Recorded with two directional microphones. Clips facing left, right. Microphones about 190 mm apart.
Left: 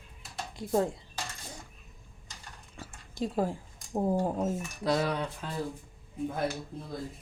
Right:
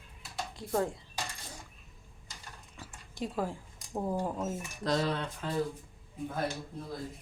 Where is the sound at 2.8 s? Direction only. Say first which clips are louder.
Left 4 dB; 40° left (ahead or behind).